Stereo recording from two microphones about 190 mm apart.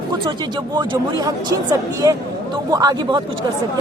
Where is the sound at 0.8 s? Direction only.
20° right (ahead or behind).